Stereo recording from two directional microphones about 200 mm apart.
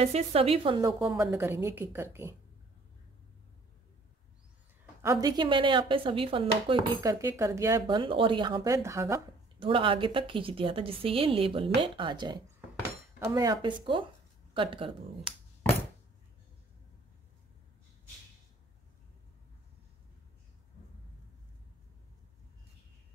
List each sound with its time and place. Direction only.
0.0 s speech: 30° right (ahead or behind)
0.9 s a woman's voice: 5° right (ahead or behind)
5.0 s speech: 15° right (ahead or behind)
9.6 s speech: 25° right (ahead or behind)